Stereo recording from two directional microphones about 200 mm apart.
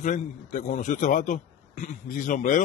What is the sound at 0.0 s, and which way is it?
A man's voice, 40° left (ahead or behind).